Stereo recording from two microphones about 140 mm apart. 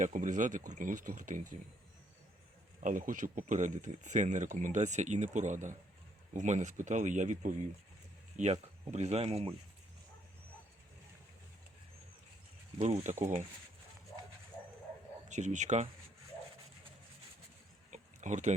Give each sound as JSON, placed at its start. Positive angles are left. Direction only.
{"t": 0.0, "sound": "speech", "side_deg": -60}
{"t": 2.8, "sound": "speech", "side_deg": -65}
{"t": 8.4, "sound": "speech", "side_deg": -10}
{"t": 8.9, "sound": "speech", "side_deg": -50}
{"t": 12.8, "sound": "speech", "side_deg": -50}
{"t": 15.3, "sound": "speech", "side_deg": -60}
{"t": 17.9, "sound": "a sound", "side_deg": -60}